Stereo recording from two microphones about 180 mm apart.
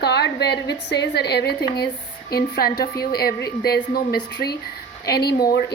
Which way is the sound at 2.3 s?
55° left (ahead or behind).